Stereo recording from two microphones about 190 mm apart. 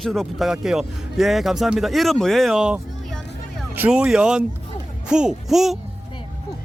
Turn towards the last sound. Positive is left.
turn(degrees=0)  # may be behind; listen again after turning